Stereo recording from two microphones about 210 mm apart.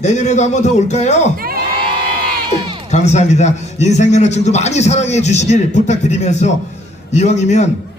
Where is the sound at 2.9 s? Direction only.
35° left (ahead or behind).